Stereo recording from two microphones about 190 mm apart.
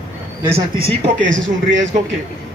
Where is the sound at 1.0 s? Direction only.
75° right (ahead or behind).